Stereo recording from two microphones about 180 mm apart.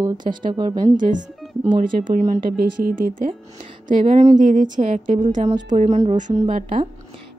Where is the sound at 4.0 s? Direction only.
35° right (ahead or behind).